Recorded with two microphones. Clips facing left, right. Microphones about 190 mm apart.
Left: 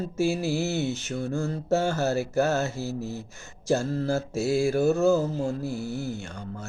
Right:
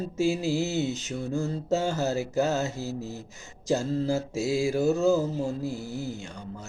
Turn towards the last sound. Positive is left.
turn(degrees=-15)  # may be behind; listen again after turning